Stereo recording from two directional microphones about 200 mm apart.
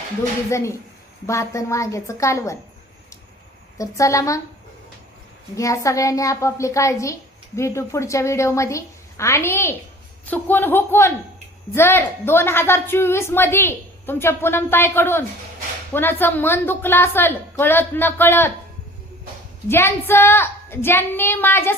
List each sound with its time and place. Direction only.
0.5 s a woman's voice: 15° left (ahead or behind)
3.8 s a woman's voice: 15° left (ahead or behind)
5.5 s a woman's voice: 15° left (ahead or behind)
19.6 s a woman's voice: 10° left (ahead or behind)